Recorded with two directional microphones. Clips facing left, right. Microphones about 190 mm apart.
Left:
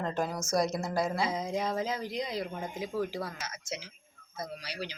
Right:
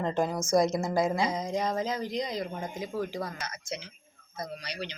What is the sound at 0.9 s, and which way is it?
Speech, 15° right (ahead or behind).